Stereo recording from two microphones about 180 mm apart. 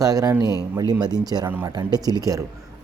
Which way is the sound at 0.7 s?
20° right (ahead or behind).